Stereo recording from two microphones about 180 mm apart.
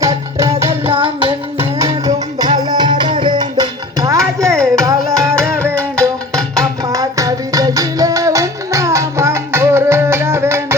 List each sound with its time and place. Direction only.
0.0 s music: 15° right (ahead or behind)
0.9 s child singing: 30° right (ahead or behind)
1.5 s music: 20° right (ahead or behind)
5.7 s music: 5° left (ahead or behind)
6.6 s music: 20° right (ahead or behind)